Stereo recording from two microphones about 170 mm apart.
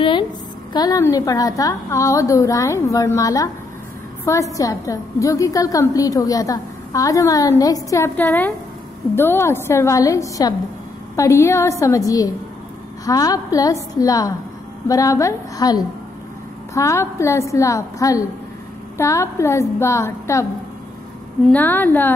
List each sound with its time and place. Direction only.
0.7 s a woman's voice: 20° left (ahead or behind)
21.5 s a woman's voice: 10° left (ahead or behind)